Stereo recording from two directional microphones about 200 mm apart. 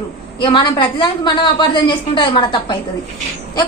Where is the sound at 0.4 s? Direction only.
20° left (ahead or behind).